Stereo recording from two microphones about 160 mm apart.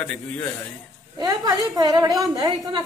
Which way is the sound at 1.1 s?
25° right (ahead or behind).